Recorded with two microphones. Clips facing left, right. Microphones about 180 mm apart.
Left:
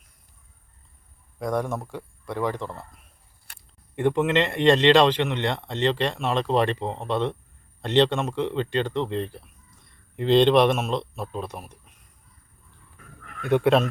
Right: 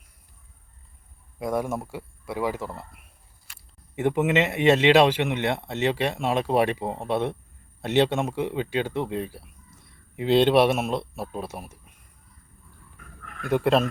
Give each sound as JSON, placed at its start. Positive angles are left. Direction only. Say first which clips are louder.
{"t": 1.4, "sound": "speech", "louder": "even", "side_deg": -5}
{"t": 3.5, "sound": "a sound", "louder": "left 2 dB", "side_deg": 60}
{"t": 3.9, "sound": "speech", "louder": "left 1 dB", "side_deg": -10}
{"t": 13.4, "sound": "speech", "louder": "left 2 dB", "side_deg": 0}